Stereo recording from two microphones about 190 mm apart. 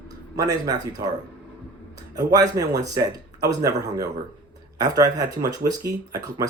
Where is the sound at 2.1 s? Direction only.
20° right (ahead or behind).